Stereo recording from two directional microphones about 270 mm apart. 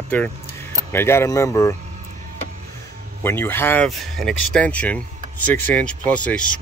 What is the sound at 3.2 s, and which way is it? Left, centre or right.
Speech, centre.